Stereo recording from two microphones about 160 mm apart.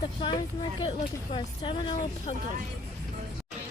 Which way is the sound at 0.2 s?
30° left (ahead or behind).